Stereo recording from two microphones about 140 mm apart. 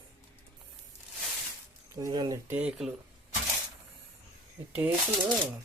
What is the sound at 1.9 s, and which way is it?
Speech, 25° right (ahead or behind).